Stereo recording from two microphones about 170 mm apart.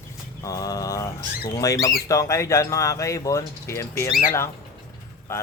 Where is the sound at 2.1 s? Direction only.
20° left (ahead or behind).